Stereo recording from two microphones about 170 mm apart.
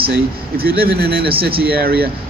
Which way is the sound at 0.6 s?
65° right (ahead or behind).